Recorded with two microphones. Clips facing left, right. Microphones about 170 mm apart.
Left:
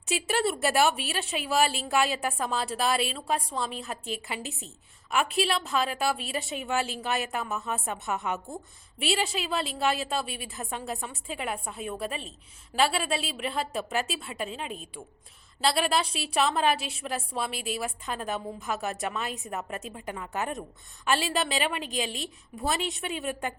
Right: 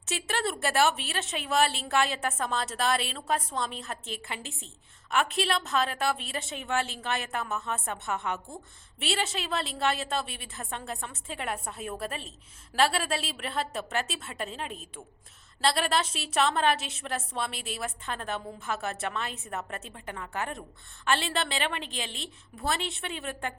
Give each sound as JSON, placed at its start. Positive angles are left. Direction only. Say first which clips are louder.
{"t": 0.1, "sound": "a woman's voice", "louder": "left 4 dB", "side_deg": 15}
{"t": 0.8, "sound": "a woman's voice", "louder": "right 2 dB", "side_deg": 5}
{"t": 7.9, "sound": "a woman's voice", "louder": "left 2 dB", "side_deg": 15}
{"t": 9.0, "sound": "a woman's voice", "louder": "left 3 dB", "side_deg": 5}
{"t": 10.6, "sound": "a woman's voice", "louder": "left 2 dB", "side_deg": 15}